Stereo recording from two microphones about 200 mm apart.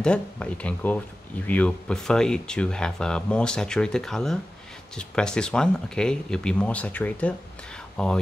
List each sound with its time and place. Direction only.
0.0 s speech: 5° left (ahead or behind)